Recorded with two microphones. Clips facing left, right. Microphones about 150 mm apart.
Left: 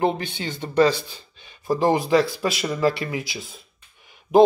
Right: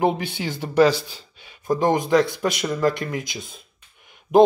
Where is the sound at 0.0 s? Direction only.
10° right (ahead or behind).